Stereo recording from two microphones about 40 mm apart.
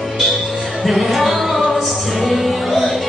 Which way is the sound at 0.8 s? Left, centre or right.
Centre.